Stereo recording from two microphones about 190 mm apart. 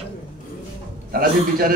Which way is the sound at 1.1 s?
50° right (ahead or behind).